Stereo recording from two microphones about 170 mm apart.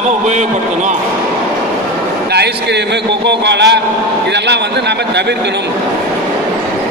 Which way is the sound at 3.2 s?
90° right.